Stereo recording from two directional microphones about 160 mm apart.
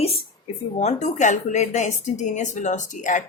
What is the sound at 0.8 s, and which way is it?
A woman's voice, 45° left (ahead or behind).